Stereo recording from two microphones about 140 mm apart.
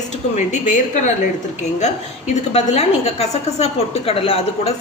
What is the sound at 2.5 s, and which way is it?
A woman's voice, 50° left (ahead or behind).